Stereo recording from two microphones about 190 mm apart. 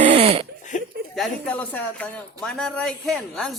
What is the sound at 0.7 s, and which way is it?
Chuckle, 40° left (ahead or behind).